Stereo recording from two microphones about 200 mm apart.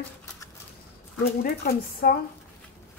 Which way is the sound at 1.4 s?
50° left (ahead or behind).